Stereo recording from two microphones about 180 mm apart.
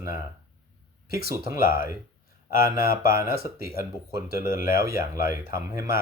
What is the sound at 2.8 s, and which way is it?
Speech, 55° left (ahead or behind).